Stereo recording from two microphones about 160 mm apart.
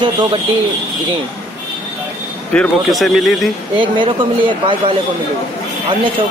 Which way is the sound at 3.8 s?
30° right (ahead or behind).